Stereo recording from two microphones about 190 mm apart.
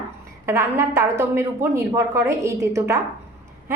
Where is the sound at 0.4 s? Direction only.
15° right (ahead or behind).